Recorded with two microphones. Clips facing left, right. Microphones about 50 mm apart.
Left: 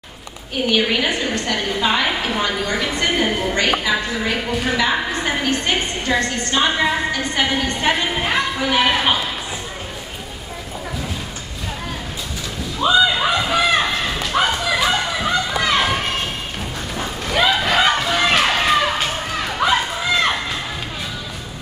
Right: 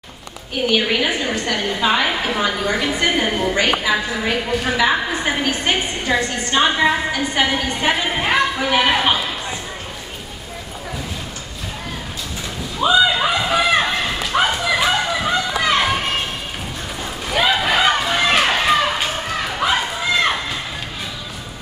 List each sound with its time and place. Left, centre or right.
0.7 s a woman's voice: centre
6.1 s a woman's voice: centre
12.7 s a sound: centre
14.3 s children playing: centre
17.3 s a sound: centre
19.4 s run: centre